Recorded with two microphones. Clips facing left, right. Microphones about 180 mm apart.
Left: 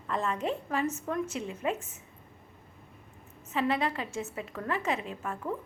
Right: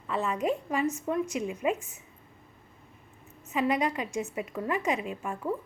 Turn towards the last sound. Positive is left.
turn(degrees=-10)  # may be behind; listen again after turning